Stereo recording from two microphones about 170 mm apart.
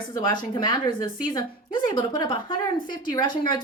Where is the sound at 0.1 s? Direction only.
20° left (ahead or behind).